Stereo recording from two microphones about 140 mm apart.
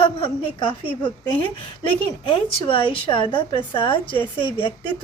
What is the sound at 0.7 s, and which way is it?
A woman's voice, 40° left (ahead or behind).